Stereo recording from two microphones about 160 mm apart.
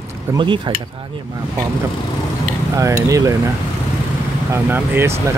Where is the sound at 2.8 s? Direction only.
20° right (ahead or behind).